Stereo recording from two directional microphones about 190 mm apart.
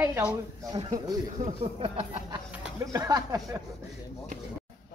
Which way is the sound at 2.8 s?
15° right (ahead or behind).